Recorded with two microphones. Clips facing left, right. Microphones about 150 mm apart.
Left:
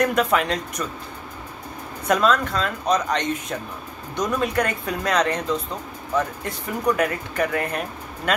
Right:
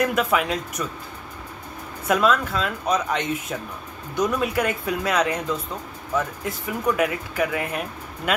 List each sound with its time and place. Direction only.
0.0 s speech: 5° right (ahead or behind)
2.0 s speech: 5° right (ahead or behind)